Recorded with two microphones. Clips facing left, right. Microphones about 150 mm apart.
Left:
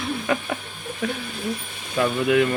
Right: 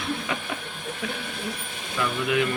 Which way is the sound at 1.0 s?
45° left (ahead or behind).